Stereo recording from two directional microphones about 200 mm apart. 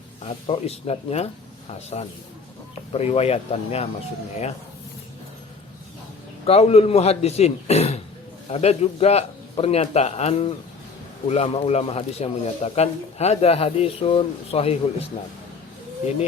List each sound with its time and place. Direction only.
0.3 s speech: 30° left (ahead or behind)
6.4 s speech: 30° left (ahead or behind)